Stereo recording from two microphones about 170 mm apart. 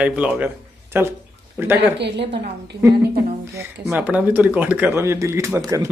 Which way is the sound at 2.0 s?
85° right.